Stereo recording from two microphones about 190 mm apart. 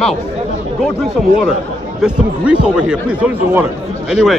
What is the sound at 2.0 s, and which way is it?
Speech, 5° right (ahead or behind).